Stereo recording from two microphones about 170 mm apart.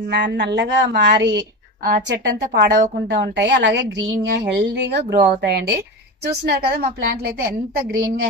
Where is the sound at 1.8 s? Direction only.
75° right (ahead or behind).